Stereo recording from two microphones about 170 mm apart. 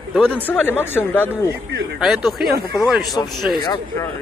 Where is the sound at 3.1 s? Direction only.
25° left (ahead or behind).